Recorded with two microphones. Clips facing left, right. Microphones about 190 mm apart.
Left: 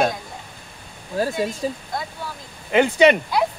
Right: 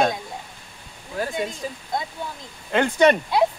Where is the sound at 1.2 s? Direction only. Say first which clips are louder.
Left 4 dB; 30° left (ahead or behind).